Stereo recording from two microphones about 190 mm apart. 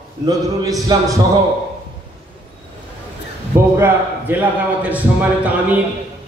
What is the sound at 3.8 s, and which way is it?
A man's voice, 10° right (ahead or behind).